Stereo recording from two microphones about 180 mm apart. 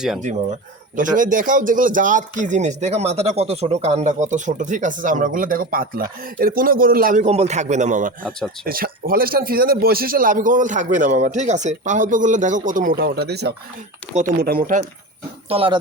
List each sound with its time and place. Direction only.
0.9 s speech: 45° right (ahead or behind)
7.3 s a man's voice: 35° right (ahead or behind)
8.6 s speech: 55° right (ahead or behind)
14.1 s a man's voice: 40° right (ahead or behind)
14.4 s speech: 50° right (ahead or behind)
15.4 s a man's voice: 30° right (ahead or behind)